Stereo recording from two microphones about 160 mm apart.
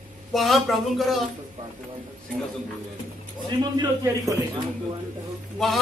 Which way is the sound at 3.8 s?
25° right (ahead or behind).